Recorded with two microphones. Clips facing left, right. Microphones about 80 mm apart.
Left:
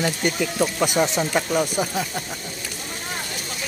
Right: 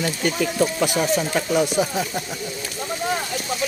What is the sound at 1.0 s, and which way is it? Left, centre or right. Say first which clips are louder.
Speech: left 1 dB; centre.